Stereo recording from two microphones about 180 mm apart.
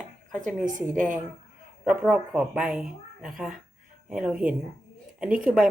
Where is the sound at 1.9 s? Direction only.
5° right (ahead or behind).